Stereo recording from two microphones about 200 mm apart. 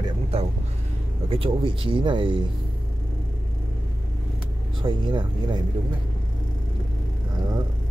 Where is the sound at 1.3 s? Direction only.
25° right (ahead or behind).